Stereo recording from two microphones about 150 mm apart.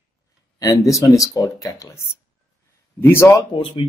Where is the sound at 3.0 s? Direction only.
15° left (ahead or behind).